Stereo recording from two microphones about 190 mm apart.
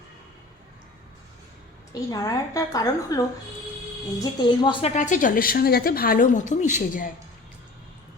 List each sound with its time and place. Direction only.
1.9 s a woman's voice: 20° left (ahead or behind)
4.9 s a woman's voice: 40° left (ahead or behind)